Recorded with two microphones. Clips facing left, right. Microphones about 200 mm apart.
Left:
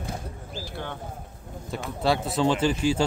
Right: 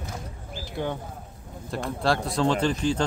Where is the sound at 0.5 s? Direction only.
15° right (ahead or behind).